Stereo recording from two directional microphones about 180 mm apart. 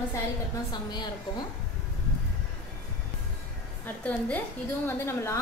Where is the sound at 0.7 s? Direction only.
25° left (ahead or behind).